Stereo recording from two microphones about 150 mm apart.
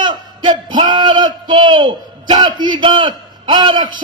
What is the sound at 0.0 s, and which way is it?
A man's voice, 30° right (ahead or behind).